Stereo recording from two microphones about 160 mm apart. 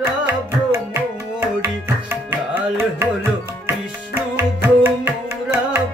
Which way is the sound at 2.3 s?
15° right (ahead or behind).